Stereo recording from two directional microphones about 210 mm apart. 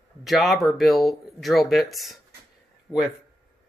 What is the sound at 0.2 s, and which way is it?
Speech, centre (ahead or behind).